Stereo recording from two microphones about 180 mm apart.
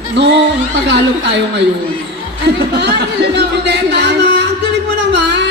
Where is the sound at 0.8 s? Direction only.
70° right (ahead or behind).